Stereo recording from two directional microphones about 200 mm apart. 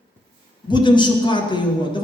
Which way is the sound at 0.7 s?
25° left (ahead or behind).